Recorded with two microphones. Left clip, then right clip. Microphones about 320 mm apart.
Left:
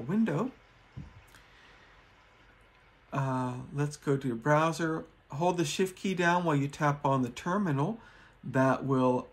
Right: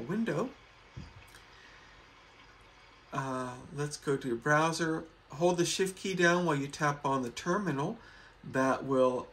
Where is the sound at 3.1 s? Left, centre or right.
Left.